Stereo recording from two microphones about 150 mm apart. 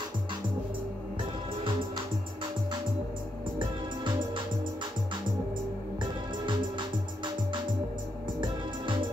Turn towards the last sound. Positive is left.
turn(degrees=-30)  # may be behind; listen again after turning